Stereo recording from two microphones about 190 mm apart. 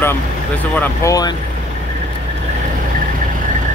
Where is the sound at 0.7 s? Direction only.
15° left (ahead or behind).